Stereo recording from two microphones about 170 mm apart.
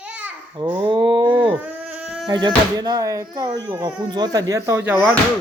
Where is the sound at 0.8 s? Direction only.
30° right (ahead or behind).